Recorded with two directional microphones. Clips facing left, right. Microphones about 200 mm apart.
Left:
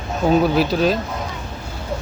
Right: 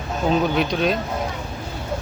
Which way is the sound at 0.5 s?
5° left (ahead or behind).